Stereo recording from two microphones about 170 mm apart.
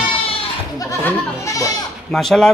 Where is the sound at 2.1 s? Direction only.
Centre (ahead or behind).